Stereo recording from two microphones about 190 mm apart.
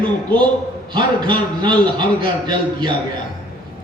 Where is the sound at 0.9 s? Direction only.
25° right (ahead or behind).